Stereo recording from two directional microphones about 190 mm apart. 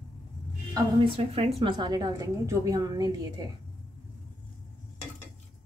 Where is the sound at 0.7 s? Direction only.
30° right (ahead or behind).